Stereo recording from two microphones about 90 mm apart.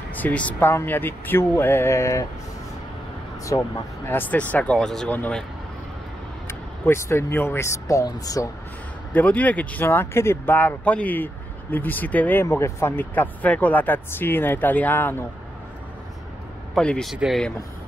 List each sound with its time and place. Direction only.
0.1 s speech: 15° left (ahead or behind); by 2.2 s 35° left (ahead or behind)
3.5 s speech: 45° left (ahead or behind)
4.1 s speech: 20° left (ahead or behind)
6.4 s speech: 30° left (ahead or behind)
9.1 s speech: 20° left (ahead or behind)
12.4 s speech: 30° left (ahead or behind)
16.7 s speech: 10° left (ahead or behind)
17.1 s speech: 5° right (ahead or behind)